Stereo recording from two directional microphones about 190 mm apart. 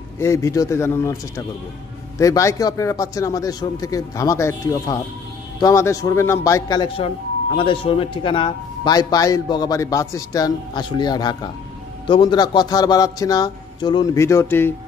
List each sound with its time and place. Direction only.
0.2 s a man's voice: 15° left (ahead or behind)